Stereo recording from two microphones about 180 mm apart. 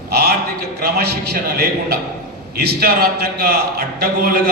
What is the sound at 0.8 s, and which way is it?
A man's voice, 60° right (ahead or behind).